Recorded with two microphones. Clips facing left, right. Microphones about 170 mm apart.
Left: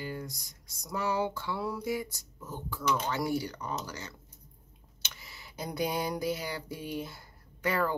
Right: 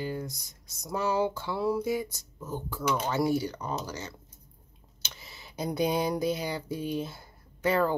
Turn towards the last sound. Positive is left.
turn(degrees=-25)  # may be behind; listen again after turning